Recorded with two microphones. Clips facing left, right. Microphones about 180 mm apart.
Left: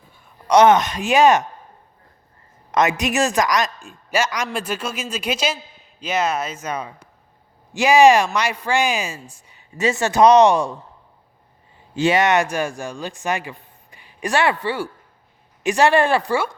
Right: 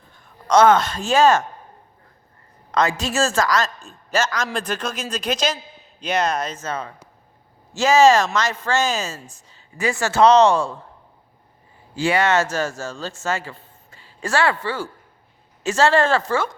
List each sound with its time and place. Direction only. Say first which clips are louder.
0.1 s speech: left 1 dB; 15° left (ahead or behind)
2.7 s speech: left 2 dB; 20° left (ahead or behind)
11.9 s a man's voice: left 2 dB; 20° left (ahead or behind)